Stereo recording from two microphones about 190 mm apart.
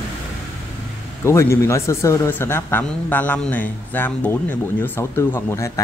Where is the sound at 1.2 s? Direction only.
15° left (ahead or behind).